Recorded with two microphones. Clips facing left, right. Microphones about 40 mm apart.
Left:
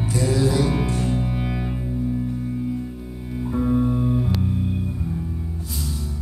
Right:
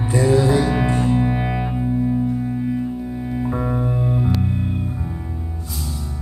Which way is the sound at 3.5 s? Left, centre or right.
Right.